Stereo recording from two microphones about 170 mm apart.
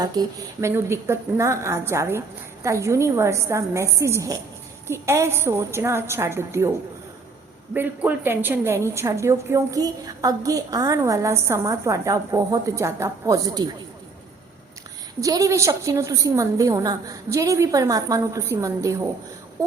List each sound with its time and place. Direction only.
0.0 s a woman's voice: 25° right (ahead or behind)
7.7 s a woman's voice: 10° right (ahead or behind)
15.2 s a woman's voice: 20° right (ahead or behind)